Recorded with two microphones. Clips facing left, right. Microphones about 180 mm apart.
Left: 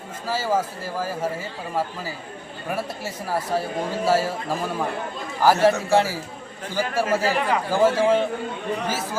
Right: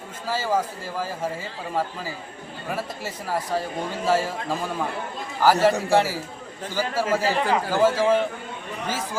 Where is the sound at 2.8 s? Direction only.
10° left (ahead or behind).